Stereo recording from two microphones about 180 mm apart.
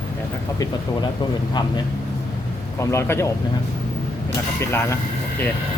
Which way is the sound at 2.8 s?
15° left (ahead or behind).